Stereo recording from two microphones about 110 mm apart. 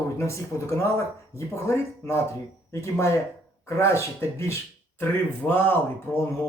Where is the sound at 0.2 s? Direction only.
25° left (ahead or behind).